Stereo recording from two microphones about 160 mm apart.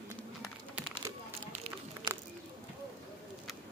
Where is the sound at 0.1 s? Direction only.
15° left (ahead or behind).